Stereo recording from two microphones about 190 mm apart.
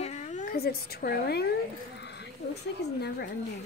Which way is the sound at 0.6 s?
55° left (ahead or behind).